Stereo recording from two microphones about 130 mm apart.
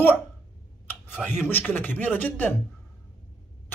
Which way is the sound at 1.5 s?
15° left (ahead or behind).